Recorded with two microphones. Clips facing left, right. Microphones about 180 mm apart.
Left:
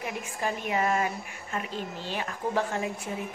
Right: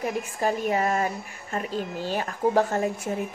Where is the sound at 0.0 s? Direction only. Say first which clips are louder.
Right 6 dB; 40° right (ahead or behind).